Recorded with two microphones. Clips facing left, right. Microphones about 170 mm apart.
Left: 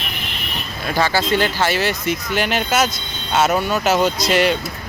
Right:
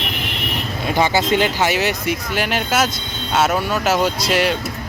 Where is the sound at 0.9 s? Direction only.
20° right (ahead or behind).